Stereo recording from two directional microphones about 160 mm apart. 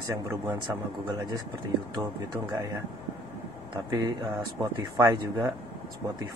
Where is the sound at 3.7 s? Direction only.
25° right (ahead or behind).